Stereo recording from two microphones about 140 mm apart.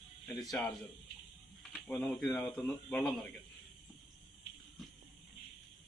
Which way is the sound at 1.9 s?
5° left (ahead or behind).